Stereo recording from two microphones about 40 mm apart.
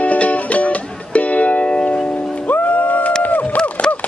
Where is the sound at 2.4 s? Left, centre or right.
Left.